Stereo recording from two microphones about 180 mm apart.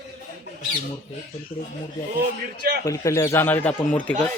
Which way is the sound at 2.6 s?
60° right (ahead or behind).